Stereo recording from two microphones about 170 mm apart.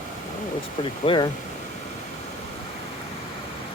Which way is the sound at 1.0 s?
25° left (ahead or behind).